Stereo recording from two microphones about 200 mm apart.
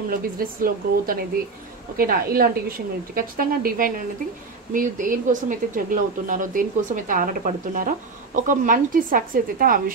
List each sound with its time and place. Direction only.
0.1 s speech: 45° right (ahead or behind)